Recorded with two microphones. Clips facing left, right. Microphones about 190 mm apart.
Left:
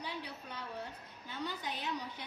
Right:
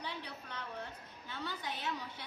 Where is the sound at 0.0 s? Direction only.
10° left (ahead or behind).